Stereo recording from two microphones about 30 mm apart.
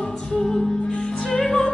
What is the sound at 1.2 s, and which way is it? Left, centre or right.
Music, centre.